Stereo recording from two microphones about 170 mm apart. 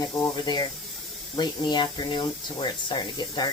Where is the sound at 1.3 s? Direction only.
25° left (ahead or behind).